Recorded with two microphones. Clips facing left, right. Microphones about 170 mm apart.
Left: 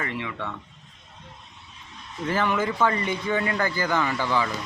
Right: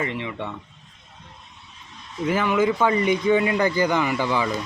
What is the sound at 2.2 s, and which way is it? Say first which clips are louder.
Speech: right 4 dB; 10° right (ahead or behind).